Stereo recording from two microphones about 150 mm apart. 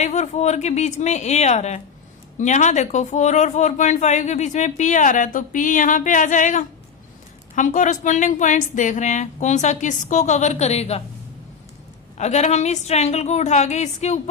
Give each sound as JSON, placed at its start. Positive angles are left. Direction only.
{"t": 0.0, "sound": "speech", "side_deg": 50}
{"t": 12.1, "sound": "speech", "side_deg": 50}